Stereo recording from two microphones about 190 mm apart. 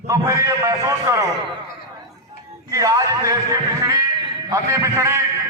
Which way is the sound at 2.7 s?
20° right (ahead or behind).